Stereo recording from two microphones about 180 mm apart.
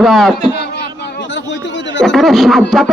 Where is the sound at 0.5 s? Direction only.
70° left (ahead or behind).